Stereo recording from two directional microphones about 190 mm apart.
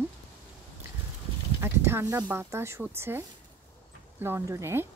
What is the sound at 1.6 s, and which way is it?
Speech, 15° right (ahead or behind).